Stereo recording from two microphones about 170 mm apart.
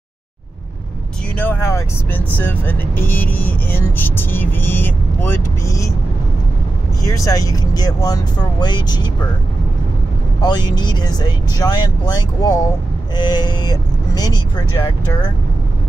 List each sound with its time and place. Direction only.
1.3 s speech: 10° left (ahead or behind)
7.1 s speech: 20° left (ahead or behind)
10.4 s speech: 25° left (ahead or behind)